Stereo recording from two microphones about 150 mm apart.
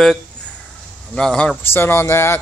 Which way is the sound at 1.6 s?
15° left (ahead or behind).